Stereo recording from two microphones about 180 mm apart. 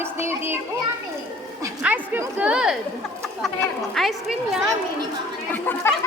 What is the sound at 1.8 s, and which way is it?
Speech, 10° right (ahead or behind).